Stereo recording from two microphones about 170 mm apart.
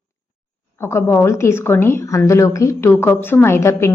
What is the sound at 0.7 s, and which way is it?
A woman's voice, 15° left (ahead or behind).